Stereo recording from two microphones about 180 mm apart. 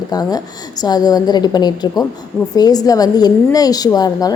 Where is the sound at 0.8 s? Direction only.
20° left (ahead or behind).